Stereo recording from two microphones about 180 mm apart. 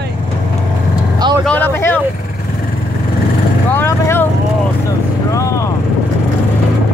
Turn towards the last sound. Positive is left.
turn(degrees=15)  # may be behind; listen again after turning